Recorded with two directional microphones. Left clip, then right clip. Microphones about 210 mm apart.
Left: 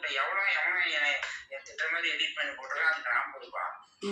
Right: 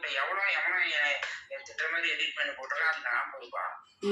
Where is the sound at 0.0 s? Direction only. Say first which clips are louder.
Left 1 dB; 15° right (ahead or behind).